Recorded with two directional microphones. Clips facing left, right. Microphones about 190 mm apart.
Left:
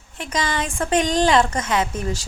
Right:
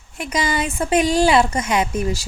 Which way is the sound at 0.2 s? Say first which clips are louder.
Right 3 dB; 10° right (ahead or behind).